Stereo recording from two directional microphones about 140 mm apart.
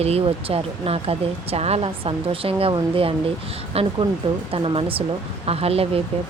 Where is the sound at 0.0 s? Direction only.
45° right (ahead or behind).